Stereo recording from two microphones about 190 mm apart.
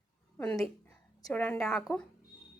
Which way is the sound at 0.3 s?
10° left (ahead or behind).